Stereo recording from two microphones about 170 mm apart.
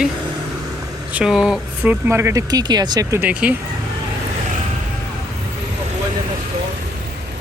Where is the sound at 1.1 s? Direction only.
5° right (ahead or behind).